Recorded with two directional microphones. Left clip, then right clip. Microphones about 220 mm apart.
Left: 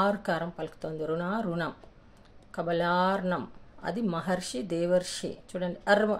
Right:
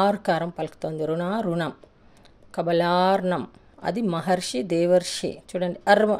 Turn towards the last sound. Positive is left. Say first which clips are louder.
# right 6 dB
turn(degrees=-35)  # may be behind; listen again after turning